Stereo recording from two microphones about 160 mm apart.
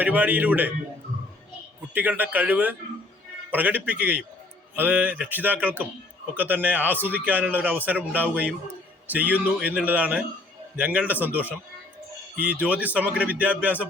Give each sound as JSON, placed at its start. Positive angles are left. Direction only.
{"t": 0.0, "sound": "a man's voice", "side_deg": -10}
{"t": 1.9, "sound": "a man's voice", "side_deg": -10}